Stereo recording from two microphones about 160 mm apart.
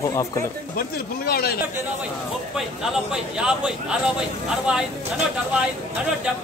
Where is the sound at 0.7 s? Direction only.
70° left (ahead or behind).